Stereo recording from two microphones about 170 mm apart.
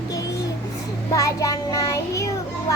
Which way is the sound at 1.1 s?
20° left (ahead or behind).